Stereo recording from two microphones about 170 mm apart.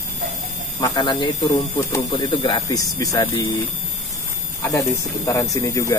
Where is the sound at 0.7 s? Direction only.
25° left (ahead or behind).